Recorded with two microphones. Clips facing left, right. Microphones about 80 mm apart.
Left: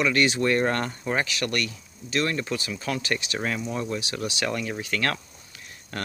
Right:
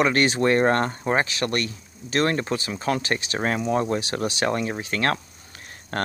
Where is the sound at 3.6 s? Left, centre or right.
Right.